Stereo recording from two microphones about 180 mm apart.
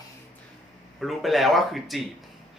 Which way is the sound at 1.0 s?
Centre (ahead or behind).